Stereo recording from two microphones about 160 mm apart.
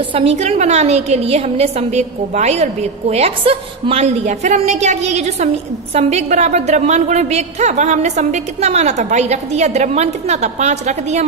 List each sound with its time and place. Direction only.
0.1 s a woman's voice: 40° right (ahead or behind)